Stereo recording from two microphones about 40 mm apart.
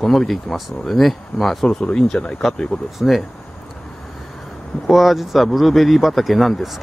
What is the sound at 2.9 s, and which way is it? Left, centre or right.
Speech, centre.